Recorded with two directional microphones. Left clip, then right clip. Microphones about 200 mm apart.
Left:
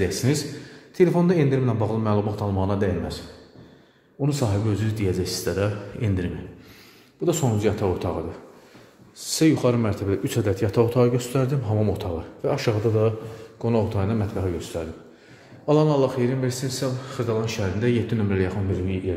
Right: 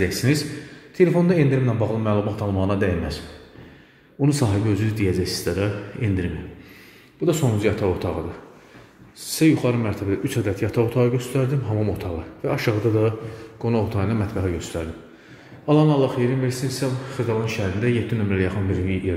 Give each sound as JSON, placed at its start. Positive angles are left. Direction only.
{"t": 0.0, "sound": "a man's voice", "side_deg": 5}
{"t": 4.2, "sound": "a man's voice", "side_deg": 0}